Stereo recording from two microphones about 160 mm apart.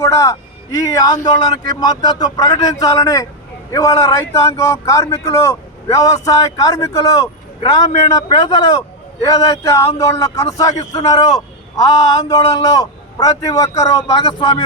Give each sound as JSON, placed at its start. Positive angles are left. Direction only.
{"t": 0.0, "sound": "a man's voice", "side_deg": 20}